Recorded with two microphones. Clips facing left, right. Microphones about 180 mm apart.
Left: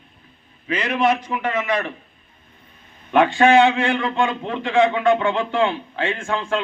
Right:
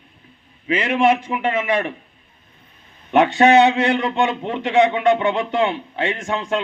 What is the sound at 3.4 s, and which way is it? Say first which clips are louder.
A man's voice: right 2 dB; 20° right (ahead or behind).